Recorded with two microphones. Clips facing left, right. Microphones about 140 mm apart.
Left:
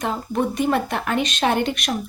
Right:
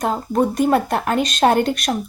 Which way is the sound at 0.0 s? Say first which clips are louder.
Right 4 dB; 40° right (ahead or behind).